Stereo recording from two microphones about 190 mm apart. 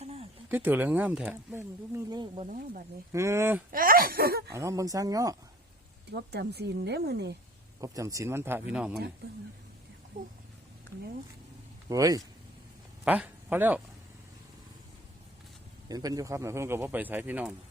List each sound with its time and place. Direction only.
0.0 s a sound: 30° right (ahead or behind)
0.4 s speech: 10° right (ahead or behind)
2.0 s speech: 20° right (ahead or behind)
2.5 s speech: 45° right (ahead or behind)
3.1 s speech: 15° right (ahead or behind)
3.7 s speech: 50° right (ahead or behind)
4.5 s speech: 15° right (ahead or behind)
6.1 s speech: 60° right (ahead or behind)
7.8 s speech: 15° right (ahead or behind)
11.9 s speech: 20° right (ahead or behind)
13.1 s speech: 10° right (ahead or behind)
15.9 s speech: 20° right (ahead or behind)